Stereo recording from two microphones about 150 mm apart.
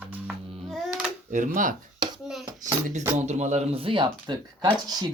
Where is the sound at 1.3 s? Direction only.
60° right (ahead or behind).